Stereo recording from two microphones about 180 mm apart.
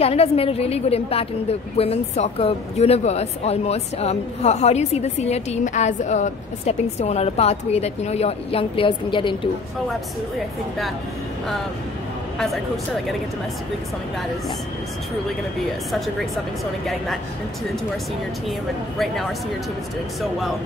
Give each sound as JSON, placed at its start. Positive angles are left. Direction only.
{"t": 0.0, "sound": "speech", "side_deg": 35}
{"t": 20.2, "sound": "speech", "side_deg": 0}